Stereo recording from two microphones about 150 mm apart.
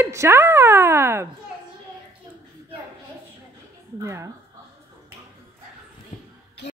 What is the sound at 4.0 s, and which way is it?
Speech, 20° right (ahead or behind).